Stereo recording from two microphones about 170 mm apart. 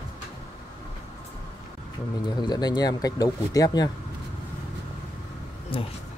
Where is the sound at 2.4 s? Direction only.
25° left (ahead or behind).